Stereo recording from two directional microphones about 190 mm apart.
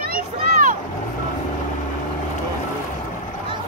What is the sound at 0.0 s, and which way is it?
Vehicle, 50° right (ahead or behind).